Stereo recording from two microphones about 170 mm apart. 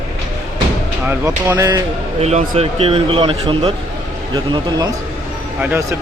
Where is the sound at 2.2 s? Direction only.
40° right (ahead or behind).